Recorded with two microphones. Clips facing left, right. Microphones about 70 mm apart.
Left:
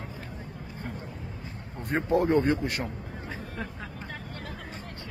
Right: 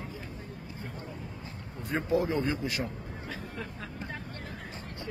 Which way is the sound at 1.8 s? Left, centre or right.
Left.